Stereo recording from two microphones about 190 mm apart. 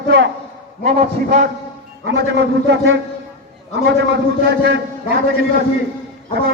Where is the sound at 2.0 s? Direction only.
65° right (ahead or behind).